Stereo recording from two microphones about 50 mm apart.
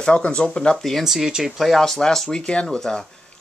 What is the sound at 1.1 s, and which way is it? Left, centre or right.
Speech, centre.